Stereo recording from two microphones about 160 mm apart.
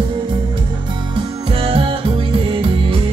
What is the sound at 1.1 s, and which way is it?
Music, 35° right (ahead or behind).